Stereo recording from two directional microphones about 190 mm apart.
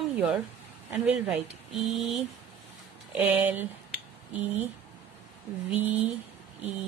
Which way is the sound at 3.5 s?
10° right (ahead or behind).